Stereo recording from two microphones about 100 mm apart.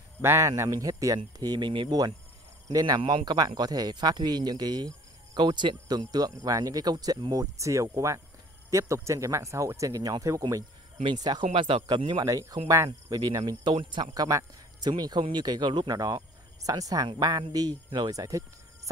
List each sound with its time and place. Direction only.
0.2 s speech: 30° right (ahead or behind)
3.0 s speech: 55° right (ahead or behind); by 10.4 s 35° right (ahead or behind)
11.1 s speech: 45° right (ahead or behind)
11.5 s speech: 60° right (ahead or behind)
11.8 s speech: 50° right (ahead or behind)
12.3 s speech: 35° right (ahead or behind)
13.2 s speech: 45° right (ahead or behind)
18.1 s speech: 35° right (ahead or behind)